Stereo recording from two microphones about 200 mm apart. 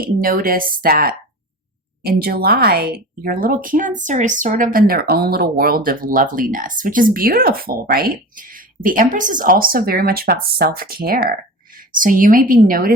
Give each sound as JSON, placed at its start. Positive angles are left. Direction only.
{"t": 0.0, "sound": "a woman's voice", "side_deg": -45}